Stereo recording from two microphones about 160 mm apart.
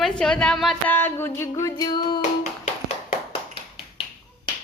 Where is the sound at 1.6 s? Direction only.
25° left (ahead or behind).